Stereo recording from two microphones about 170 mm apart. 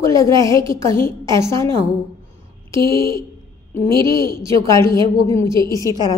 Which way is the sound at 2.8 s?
30° right (ahead or behind).